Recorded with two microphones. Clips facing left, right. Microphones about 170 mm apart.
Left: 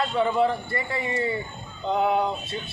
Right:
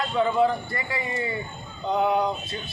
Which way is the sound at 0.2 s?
Centre (ahead or behind).